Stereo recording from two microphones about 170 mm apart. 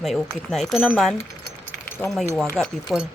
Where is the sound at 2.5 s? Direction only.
Centre (ahead or behind).